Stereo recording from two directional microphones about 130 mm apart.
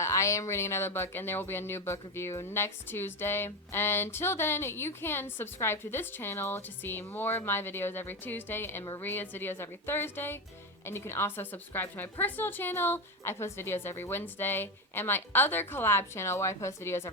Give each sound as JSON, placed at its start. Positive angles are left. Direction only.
{"t": 0.0, "sound": "speech", "side_deg": 25}